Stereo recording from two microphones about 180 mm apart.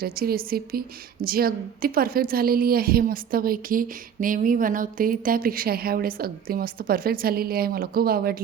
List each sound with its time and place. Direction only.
0.0 s a woman's voice: 55° right (ahead or behind)